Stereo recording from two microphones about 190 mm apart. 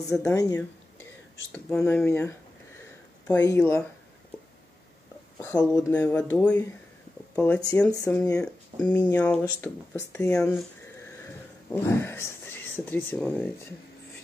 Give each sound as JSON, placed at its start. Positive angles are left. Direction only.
{"t": 0.1, "sound": "speech", "side_deg": 15}
{"t": 5.4, "sound": "speech", "side_deg": 15}